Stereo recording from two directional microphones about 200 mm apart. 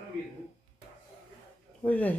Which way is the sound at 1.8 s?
10° left (ahead or behind).